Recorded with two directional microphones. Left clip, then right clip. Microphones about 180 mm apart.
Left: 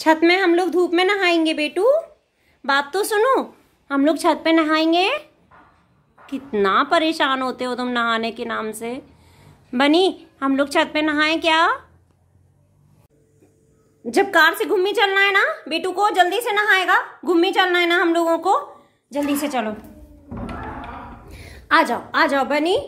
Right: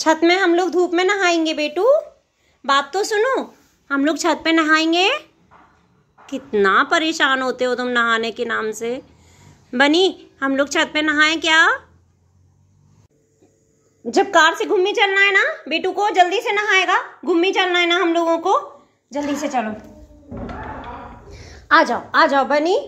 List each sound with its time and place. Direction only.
0.0 s a woman's voice: 5° left (ahead or behind); by 3.4 s 20° left (ahead or behind)
3.8 s a woman's voice: 5° left (ahead or behind)
14.0 s a woman's voice: centre (ahead or behind); by 19.7 s 15° left (ahead or behind)
21.3 s a sound: 10° left (ahead or behind)
21.6 s a woman's voice: centre (ahead or behind)